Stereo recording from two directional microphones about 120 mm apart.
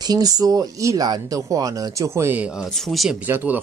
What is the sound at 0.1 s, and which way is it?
Speech, 30° right (ahead or behind).